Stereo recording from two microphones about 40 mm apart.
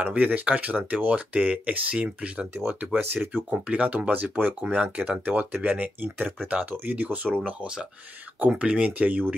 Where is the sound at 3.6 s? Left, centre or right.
Right.